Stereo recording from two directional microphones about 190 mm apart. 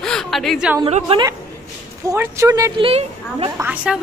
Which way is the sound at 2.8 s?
30° right (ahead or behind).